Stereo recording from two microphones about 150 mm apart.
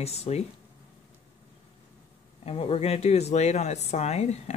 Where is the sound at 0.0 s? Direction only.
45° left (ahead or behind).